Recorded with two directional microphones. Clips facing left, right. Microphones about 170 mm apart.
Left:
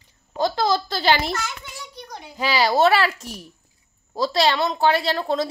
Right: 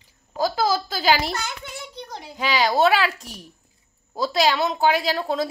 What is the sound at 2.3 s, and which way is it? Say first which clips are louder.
A woman's voice: left 1 dB; 5° left (ahead or behind).